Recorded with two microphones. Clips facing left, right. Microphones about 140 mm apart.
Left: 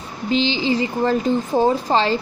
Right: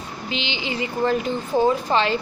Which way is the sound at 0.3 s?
35° left (ahead or behind).